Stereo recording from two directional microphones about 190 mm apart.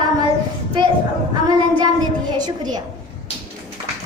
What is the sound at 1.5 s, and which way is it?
A child's voice, 20° right (ahead or behind).